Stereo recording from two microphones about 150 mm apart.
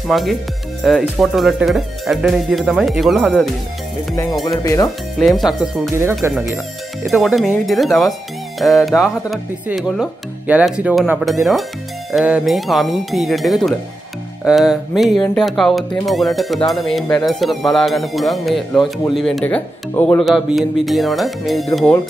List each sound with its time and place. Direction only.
0.1 s speech: centre (ahead or behind)
4.1 s music: 25° left (ahead or behind)
4.8 s speech: centre (ahead or behind)
5.9 s speech: 20° right (ahead or behind)
7.1 s speech: centre (ahead or behind)
19.4 s speech: 10° left (ahead or behind)
20.2 s speech: centre (ahead or behind)